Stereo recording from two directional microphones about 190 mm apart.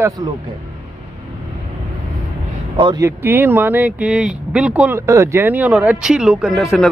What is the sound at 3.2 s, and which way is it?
Speech, 10° right (ahead or behind).